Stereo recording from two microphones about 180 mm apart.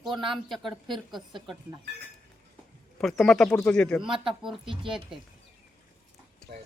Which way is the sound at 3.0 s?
Centre (ahead or behind).